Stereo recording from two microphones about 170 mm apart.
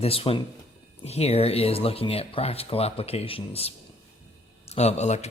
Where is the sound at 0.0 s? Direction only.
35° left (ahead or behind).